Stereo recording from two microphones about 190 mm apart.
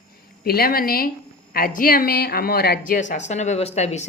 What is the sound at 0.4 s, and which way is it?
A woman's voice, 55° left (ahead or behind).